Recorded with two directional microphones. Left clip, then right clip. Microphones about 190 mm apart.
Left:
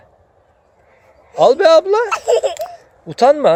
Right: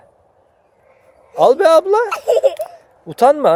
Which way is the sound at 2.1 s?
35° right (ahead or behind).